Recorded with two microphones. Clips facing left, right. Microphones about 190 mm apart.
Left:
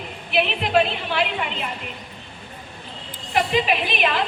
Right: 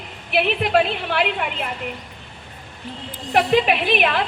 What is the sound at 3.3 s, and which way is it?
Speech, 60° right (ahead or behind).